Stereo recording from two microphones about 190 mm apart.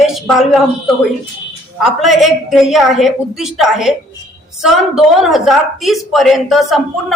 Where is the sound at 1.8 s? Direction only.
Centre (ahead or behind).